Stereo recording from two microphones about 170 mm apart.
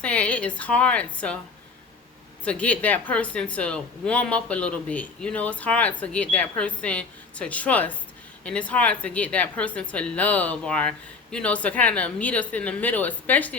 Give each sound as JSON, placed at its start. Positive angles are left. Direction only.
{"t": 0.0, "sound": "a woman's voice", "side_deg": 5}
{"t": 2.4, "sound": "speech", "side_deg": 5}